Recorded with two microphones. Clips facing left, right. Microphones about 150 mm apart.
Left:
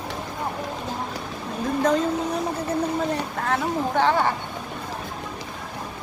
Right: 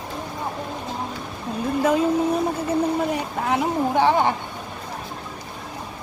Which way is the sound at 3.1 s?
15° right (ahead or behind).